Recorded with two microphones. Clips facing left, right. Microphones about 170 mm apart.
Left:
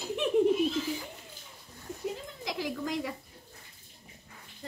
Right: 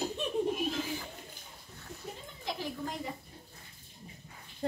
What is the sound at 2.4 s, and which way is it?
Speech, 90° left.